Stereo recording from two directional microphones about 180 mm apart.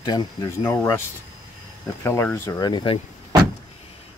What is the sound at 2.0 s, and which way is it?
Speech, 15° left (ahead or behind).